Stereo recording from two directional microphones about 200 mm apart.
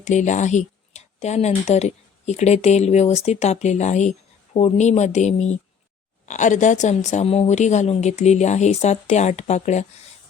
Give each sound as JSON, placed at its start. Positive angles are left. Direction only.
{"t": 0.0, "sound": "speech", "side_deg": 35}